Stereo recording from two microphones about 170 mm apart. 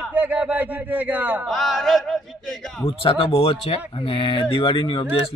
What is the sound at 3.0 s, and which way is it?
Speech, 35° left (ahead or behind).